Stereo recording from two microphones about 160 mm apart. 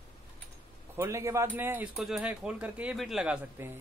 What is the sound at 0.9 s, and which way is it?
Speech, 15° right (ahead or behind).